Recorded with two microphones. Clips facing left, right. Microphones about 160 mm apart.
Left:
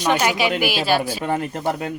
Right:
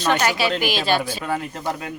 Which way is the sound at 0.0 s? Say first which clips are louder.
Left 1 dB; 15° left (ahead or behind).